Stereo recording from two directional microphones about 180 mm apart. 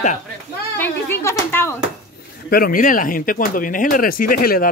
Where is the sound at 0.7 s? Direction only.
10° left (ahead or behind).